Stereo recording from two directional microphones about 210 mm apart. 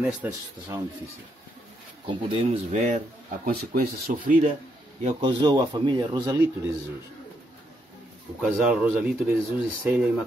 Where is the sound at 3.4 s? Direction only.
40° right (ahead or behind).